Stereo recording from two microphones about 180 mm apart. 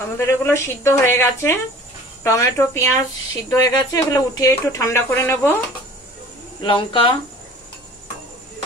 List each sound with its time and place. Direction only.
0.0 s speech: 15° left (ahead or behind)
6.6 s speech: 25° left (ahead or behind)